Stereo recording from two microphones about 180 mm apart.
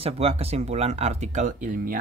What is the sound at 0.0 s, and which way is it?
Speech, 35° right (ahead or behind).